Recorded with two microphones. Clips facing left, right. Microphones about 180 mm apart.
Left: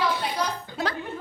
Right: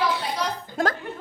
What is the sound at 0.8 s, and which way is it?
Speech, 45° right (ahead or behind).